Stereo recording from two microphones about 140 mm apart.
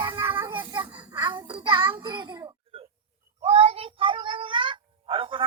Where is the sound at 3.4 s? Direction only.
45° right (ahead or behind).